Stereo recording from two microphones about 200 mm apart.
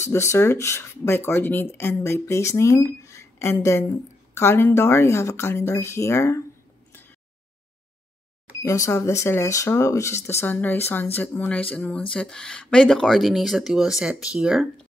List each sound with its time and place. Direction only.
0.1 s a woman's voice: 15° left (ahead or behind)
8.6 s a woman's voice: 15° left (ahead or behind); by 14.7 s 5° right (ahead or behind)